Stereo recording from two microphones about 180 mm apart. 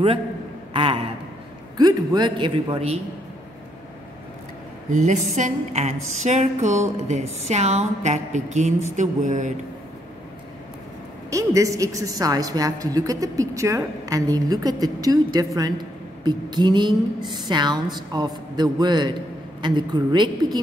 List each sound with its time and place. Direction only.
0.7 s a woman's voice: 30° right (ahead or behind)
4.8 s a woman's voice: 45° right (ahead or behind)
8.9 s a sound: 45° right (ahead or behind)
11.2 s a woman's voice: 20° right (ahead or behind)